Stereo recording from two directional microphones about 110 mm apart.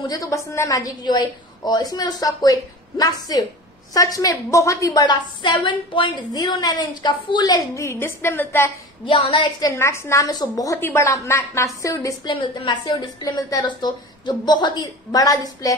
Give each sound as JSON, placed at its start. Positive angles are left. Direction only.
{"t": 0.1, "sound": "a woman's voice", "side_deg": 30}
{"t": 7.5, "sound": "a woman's voice", "side_deg": 30}
{"t": 9.0, "sound": "a woman's voice", "side_deg": 50}
{"t": 9.7, "sound": "a woman's voice", "side_deg": 25}
{"t": 10.3, "sound": "a woman's voice", "side_deg": 35}
{"t": 12.3, "sound": "a woman's voice", "side_deg": 50}